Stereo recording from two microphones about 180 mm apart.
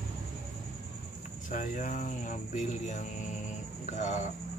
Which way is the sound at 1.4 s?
45° left (ahead or behind).